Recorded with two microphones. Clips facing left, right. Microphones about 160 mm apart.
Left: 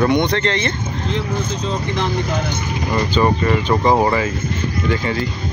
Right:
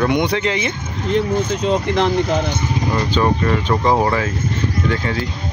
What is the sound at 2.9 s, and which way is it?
Speech, 5° left (ahead or behind).